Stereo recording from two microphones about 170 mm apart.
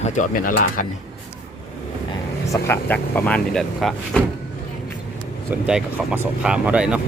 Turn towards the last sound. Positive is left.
turn(degrees=-5)  # may be behind; listen again after turning